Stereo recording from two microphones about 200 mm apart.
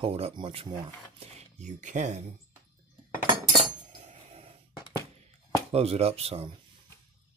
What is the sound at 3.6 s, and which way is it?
Cutlery, 35° right (ahead or behind).